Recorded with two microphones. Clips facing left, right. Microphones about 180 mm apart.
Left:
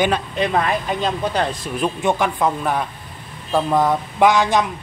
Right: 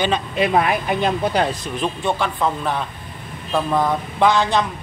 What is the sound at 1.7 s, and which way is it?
Speech, 10° left (ahead or behind).